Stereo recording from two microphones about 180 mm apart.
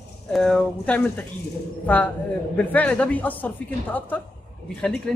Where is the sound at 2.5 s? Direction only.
10° left (ahead or behind).